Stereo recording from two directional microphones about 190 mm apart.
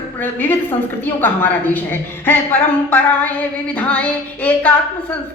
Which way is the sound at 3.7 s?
5° left (ahead or behind).